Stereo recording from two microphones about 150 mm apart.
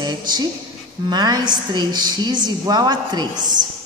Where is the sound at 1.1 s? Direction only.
30° right (ahead or behind).